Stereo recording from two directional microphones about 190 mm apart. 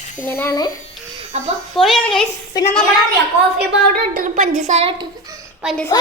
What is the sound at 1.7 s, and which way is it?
Speech, centre (ahead or behind).